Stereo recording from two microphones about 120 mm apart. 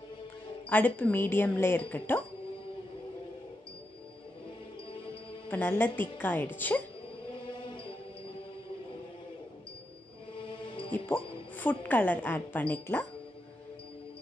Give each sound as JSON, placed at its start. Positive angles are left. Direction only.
{"t": 0.7, "sound": "speech", "side_deg": 15}
{"t": 5.5, "sound": "speech", "side_deg": 15}
{"t": 10.3, "sound": "music", "side_deg": 45}
{"t": 11.5, "sound": "speech", "side_deg": 15}